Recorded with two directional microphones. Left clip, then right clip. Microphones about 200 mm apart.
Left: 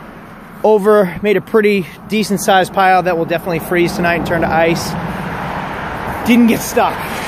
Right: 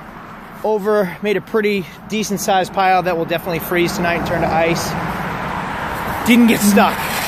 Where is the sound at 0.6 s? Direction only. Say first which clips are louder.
Left 7 dB; 30° left (ahead or behind).